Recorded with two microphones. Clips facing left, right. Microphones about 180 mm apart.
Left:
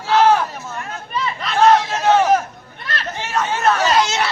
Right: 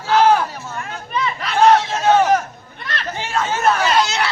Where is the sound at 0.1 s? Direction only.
5° right (ahead or behind).